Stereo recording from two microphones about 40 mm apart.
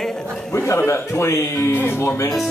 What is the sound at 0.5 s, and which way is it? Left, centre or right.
A man's voice, left.